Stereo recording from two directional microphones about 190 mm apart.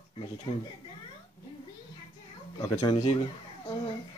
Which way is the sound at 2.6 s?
15° left (ahead or behind).